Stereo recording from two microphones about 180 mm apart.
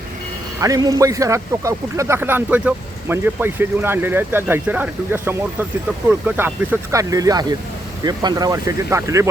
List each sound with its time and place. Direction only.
0.6 s a man's voice: 20° right (ahead or behind)